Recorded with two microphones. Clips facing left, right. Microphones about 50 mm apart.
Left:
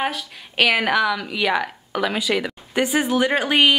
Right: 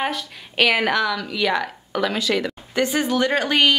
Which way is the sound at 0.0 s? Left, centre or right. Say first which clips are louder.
Even; centre.